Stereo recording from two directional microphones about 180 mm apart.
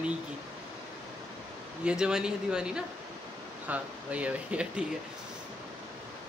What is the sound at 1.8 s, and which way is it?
Speech, 5° right (ahead or behind).